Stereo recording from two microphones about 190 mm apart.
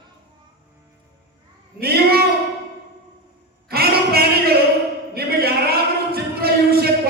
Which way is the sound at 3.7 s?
55° right (ahead or behind).